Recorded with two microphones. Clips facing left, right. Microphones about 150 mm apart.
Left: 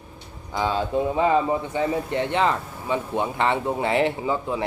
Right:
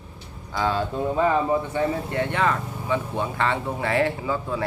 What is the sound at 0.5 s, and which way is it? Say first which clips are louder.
Speech: left 1 dB; 15° left (ahead or behind).